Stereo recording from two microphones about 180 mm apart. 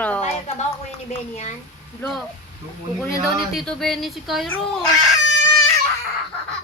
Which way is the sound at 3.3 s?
Centre (ahead or behind).